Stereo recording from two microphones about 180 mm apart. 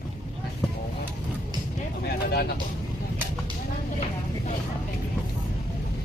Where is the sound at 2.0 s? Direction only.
60° left (ahead or behind).